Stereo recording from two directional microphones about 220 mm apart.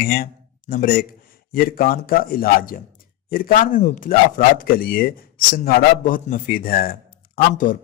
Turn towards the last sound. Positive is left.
turn(degrees=40)  # may be behind; listen again after turning